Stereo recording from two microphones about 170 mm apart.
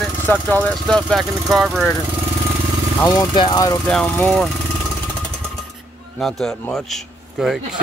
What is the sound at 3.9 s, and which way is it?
Speech, 5° left (ahead or behind).